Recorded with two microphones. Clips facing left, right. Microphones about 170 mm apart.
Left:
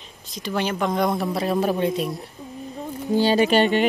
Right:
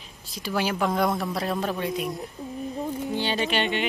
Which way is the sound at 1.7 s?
25° left (ahead or behind).